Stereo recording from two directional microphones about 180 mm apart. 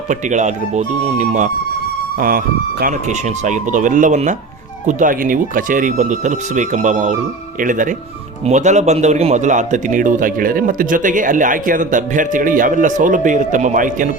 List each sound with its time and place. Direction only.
0.1 s speech: 40° right (ahead or behind)
2.1 s speech: 55° right (ahead or behind)
2.8 s a man's voice: 40° right (ahead or behind)